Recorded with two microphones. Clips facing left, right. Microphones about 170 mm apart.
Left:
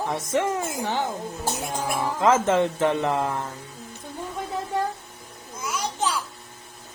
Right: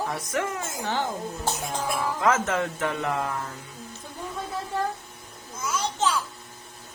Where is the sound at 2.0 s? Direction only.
25° left (ahead or behind).